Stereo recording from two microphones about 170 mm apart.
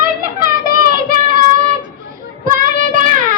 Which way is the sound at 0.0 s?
55° right (ahead or behind).